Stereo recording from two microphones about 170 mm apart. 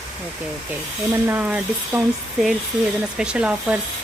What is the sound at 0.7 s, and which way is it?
A woman's voice, 10° right (ahead or behind).